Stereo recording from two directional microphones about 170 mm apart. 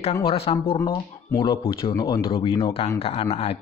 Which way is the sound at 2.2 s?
30° left (ahead or behind).